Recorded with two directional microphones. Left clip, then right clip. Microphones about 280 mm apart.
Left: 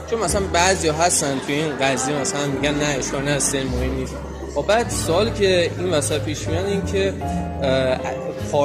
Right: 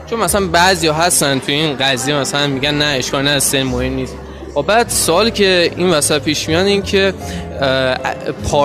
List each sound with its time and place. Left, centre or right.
0.1 s speech: right